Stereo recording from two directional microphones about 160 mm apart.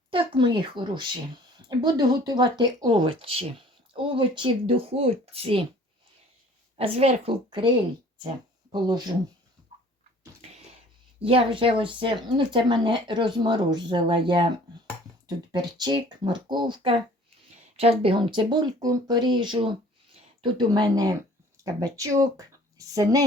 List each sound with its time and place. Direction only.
0.1 s speech: 30° right (ahead or behind)
6.7 s speech: 40° right (ahead or behind)
8.7 s speech: 25° right (ahead or behind)
11.3 s speech: 35° right (ahead or behind)
15.5 s speech: 25° right (ahead or behind)